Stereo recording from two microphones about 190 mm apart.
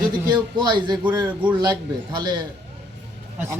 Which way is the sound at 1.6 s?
25° right (ahead or behind).